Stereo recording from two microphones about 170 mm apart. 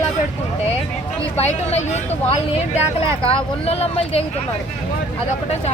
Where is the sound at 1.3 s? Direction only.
40° left (ahead or behind).